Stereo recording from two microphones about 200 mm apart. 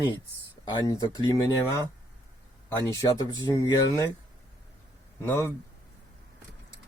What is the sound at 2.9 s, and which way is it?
Speech, 15° left (ahead or behind).